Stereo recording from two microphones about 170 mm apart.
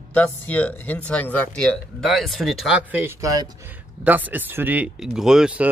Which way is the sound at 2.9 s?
15° right (ahead or behind).